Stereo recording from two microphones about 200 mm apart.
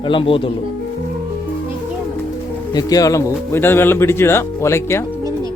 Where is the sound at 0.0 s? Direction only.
25° left (ahead or behind).